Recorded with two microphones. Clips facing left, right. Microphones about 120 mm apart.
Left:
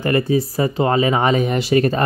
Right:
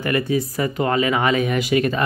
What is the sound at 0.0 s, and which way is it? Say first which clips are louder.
Speech: left 3 dB; 35° left (ahead or behind).